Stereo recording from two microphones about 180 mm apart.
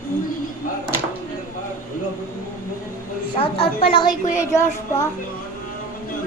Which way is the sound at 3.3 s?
30° left (ahead or behind).